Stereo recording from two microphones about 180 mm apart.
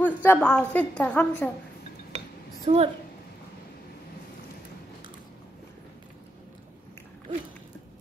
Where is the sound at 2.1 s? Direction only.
35° right (ahead or behind).